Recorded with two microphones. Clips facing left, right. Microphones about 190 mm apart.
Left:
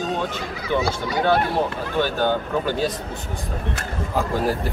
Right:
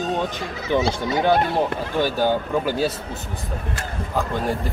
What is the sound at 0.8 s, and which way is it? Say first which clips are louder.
Speech: right 2 dB; 25° right (ahead or behind).